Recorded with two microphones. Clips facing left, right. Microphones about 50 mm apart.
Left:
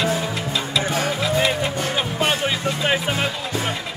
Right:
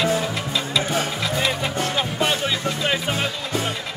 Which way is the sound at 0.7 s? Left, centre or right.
Centre.